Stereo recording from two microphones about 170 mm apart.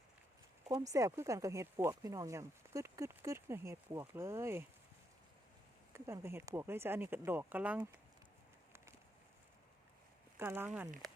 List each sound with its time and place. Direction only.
0.7 s speech: 20° right (ahead or behind)
5.9 s speech: 15° right (ahead or behind)
10.3 s speech: 15° right (ahead or behind)